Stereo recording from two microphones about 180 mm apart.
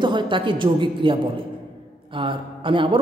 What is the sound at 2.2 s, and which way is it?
Speech, 30° right (ahead or behind).